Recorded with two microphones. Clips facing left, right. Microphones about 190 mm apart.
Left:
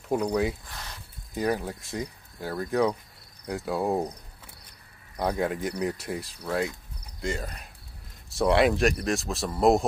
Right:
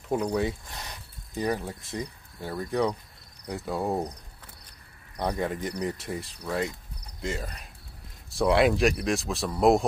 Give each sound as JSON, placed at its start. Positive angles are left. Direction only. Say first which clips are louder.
{"t": 0.3, "sound": "speech", "louder": "left 1 dB", "side_deg": 0}
{"t": 0.7, "sound": "a sound", "louder": "right 1 dB", "side_deg": -20}
{"t": 1.3, "sound": "speech", "louder": "left 2 dB", "side_deg": 0}
{"t": 5.2, "sound": "speech", "louder": "left 2 dB", "side_deg": 5}